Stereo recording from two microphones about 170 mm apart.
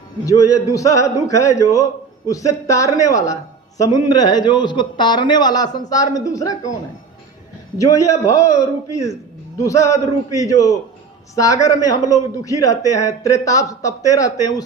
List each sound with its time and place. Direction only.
0.3 s a man's voice: 20° left (ahead or behind)
7.8 s a man's voice: 20° left (ahead or behind)